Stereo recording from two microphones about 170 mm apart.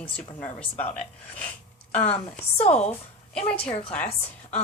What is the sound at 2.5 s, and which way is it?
Speech, 40° left (ahead or behind).